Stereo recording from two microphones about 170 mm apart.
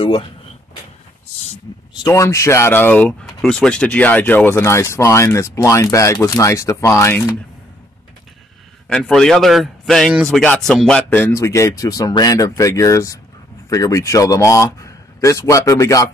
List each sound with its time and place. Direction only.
2.0 s speech: 15° left (ahead or behind)
8.8 s a man's voice: 5° left (ahead or behind); by 16.1 s 20° left (ahead or behind)